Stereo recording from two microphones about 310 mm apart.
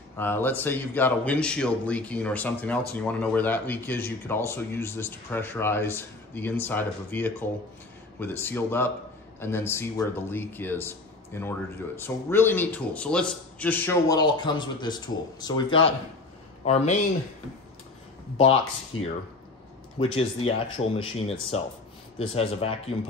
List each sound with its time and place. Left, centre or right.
0.2 s a man's voice: centre
20.0 s speech: centre